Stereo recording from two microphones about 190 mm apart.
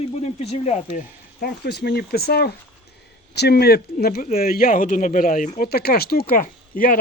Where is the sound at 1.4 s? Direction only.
60° left (ahead or behind); by 5.7 s 45° left (ahead or behind).